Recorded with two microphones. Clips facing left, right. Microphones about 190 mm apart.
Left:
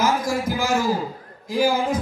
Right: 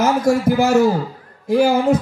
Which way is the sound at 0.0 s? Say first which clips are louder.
Right 6 dB; 65° right (ahead or behind).